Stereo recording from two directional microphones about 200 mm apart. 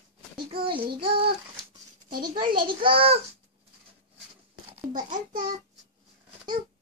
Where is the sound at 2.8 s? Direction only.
25° right (ahead or behind).